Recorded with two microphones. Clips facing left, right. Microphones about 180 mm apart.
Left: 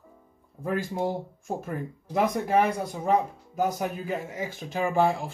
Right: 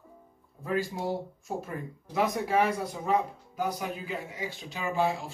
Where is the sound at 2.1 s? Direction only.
50° left (ahead or behind).